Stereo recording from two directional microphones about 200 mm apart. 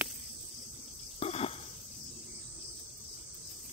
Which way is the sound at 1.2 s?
30° left (ahead or behind).